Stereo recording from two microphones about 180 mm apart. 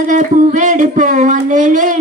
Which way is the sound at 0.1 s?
45° right (ahead or behind).